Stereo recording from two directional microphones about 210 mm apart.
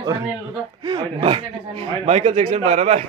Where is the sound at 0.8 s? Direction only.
25° right (ahead or behind).